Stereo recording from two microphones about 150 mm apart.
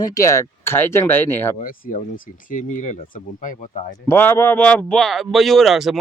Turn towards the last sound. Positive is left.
turn(degrees=0)  # may be behind; listen again after turning